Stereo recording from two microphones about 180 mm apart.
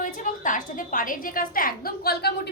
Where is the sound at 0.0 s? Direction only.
45° left (ahead or behind).